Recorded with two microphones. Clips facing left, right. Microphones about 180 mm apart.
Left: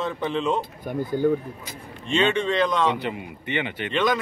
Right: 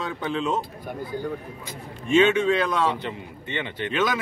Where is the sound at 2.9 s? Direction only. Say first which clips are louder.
Left 3 dB; 15° left (ahead or behind).